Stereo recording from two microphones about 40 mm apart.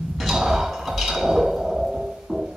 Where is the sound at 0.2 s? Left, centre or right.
Centre.